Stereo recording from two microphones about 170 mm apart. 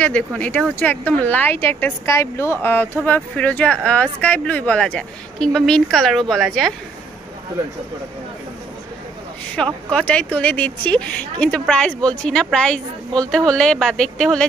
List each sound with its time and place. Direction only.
0.0 s speech: 5° left (ahead or behind)
9.8 s speech: 5° left (ahead or behind)